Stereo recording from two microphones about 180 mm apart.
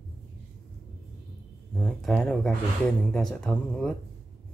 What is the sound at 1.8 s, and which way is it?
Speech, 5° left (ahead or behind).